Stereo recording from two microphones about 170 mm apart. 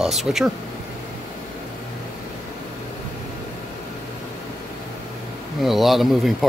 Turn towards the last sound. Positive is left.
turn(degrees=0)  # may be behind; listen again after turning